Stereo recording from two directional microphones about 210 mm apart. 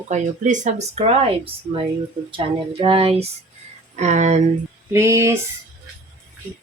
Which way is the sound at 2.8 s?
25° right (ahead or behind).